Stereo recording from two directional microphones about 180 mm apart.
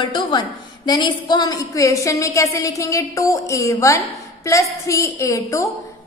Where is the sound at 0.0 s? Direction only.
25° left (ahead or behind).